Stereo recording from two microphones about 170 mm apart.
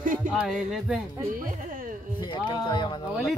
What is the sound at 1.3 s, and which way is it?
Speech, 50° right (ahead or behind).